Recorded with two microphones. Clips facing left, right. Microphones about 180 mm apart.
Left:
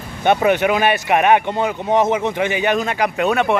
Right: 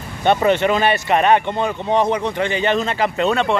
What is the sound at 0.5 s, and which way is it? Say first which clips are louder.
Speech: even; 10° left (ahead or behind).